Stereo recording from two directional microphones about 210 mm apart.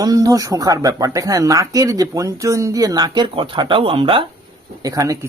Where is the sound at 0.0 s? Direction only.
15° right (ahead or behind).